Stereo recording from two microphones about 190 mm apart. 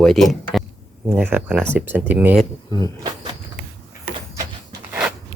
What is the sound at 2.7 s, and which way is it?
Speech, 20° left (ahead or behind).